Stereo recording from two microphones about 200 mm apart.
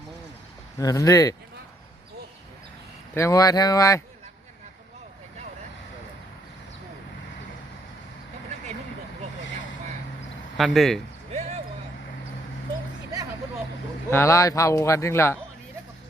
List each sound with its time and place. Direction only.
0.8 s speech: 15° left (ahead or behind)
3.2 s speech: 15° left (ahead or behind)
10.6 s speech: centre (ahead or behind)
11.3 s basketball bounce: 35° right (ahead or behind)
14.1 s speech: 15° left (ahead or behind)